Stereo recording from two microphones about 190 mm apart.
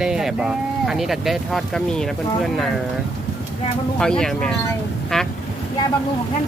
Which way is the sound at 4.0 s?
5° left (ahead or behind).